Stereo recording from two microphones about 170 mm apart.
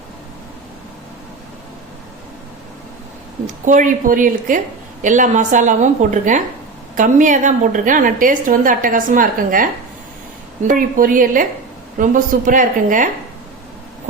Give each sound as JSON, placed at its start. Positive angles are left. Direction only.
{"t": 3.4, "sound": "a woman's voice", "side_deg": -50}
{"t": 10.7, "sound": "a woman's voice", "side_deg": -50}